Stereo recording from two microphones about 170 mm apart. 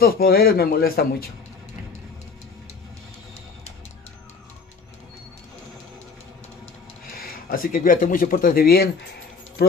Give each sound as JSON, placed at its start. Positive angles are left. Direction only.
{"t": 0.0, "sound": "a man's voice", "side_deg": 60}
{"t": 7.2, "sound": "speech", "side_deg": 60}